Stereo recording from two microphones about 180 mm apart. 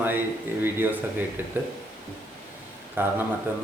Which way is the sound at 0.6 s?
10° right (ahead or behind).